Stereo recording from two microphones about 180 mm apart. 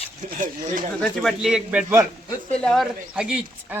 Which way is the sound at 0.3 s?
50° right (ahead or behind).